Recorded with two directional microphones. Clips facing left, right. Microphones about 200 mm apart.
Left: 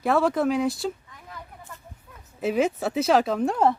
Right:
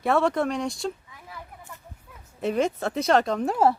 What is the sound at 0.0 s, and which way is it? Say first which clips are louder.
Speech: left 1 dB; centre (ahead or behind).